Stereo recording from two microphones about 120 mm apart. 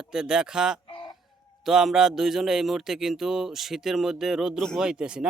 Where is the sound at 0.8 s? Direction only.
45° left (ahead or behind).